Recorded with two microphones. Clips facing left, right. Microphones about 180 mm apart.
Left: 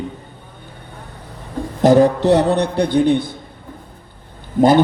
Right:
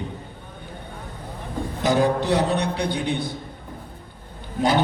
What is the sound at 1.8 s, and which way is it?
A man's voice, 60° left (ahead or behind).